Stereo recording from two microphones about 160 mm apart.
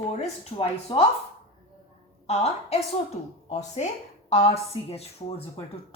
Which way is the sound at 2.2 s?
40° left (ahead or behind).